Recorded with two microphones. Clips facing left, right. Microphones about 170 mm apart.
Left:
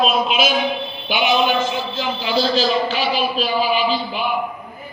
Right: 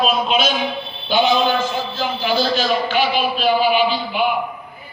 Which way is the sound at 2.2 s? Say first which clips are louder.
Left 1 dB; 30° left (ahead or behind).